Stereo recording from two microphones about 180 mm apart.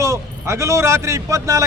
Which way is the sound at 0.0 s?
15° right (ahead or behind).